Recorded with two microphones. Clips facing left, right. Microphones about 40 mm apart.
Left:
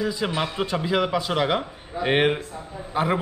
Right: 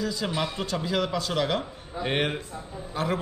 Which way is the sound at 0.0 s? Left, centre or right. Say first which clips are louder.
Left 3 dB; left.